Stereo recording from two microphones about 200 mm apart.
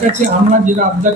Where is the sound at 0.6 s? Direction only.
40° right (ahead or behind).